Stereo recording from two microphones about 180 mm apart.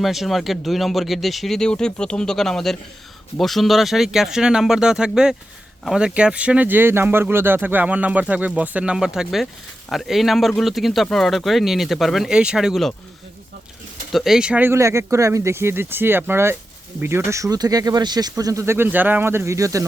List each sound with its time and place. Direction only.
0.0 s speech: centre (ahead or behind)
14.1 s speech: centre (ahead or behind); by 19.9 s 20° right (ahead or behind)